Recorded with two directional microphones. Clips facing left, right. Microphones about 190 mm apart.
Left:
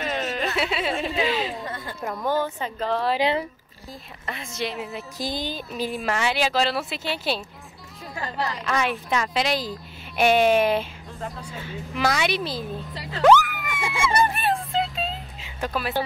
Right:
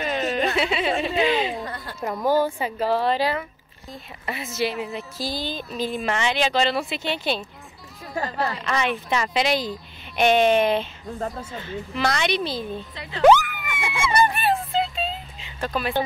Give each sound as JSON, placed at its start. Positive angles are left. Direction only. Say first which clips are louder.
{"t": 0.0, "sound": "a sound", "louder": "right 3 dB", "side_deg": 0}
{"t": 0.6, "sound": "speech", "louder": "right 2 dB", "side_deg": 0}
{"t": 3.2, "sound": "speech", "louder": "left 1 dB", "side_deg": 25}
{"t": 4.3, "sound": "speech", "louder": "right 4 dB", "side_deg": -5}
{"t": 5.1, "sound": "speech", "louder": "left 2 dB", "side_deg": 15}
{"t": 5.6, "sound": "speech", "louder": "right 1 dB", "side_deg": 5}
{"t": 8.5, "sound": "speech", "louder": "even", "side_deg": 0}
{"t": 13.4, "sound": "a sound", "louder": "left 2 dB", "side_deg": 0}
{"t": 15.6, "sound": "speech", "louder": "right 1 dB", "side_deg": 5}